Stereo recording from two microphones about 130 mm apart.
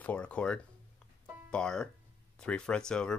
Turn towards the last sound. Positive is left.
turn(degrees=5)  # may be behind; listen again after turning